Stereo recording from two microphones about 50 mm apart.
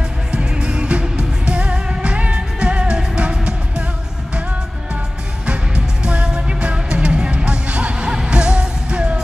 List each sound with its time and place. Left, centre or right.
0.3 s music: right
6.0 s music: centre